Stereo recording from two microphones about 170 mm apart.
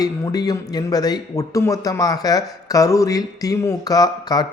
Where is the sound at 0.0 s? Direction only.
20° left (ahead or behind).